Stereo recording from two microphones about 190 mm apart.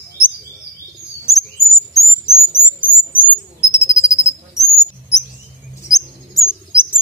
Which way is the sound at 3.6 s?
15° left (ahead or behind).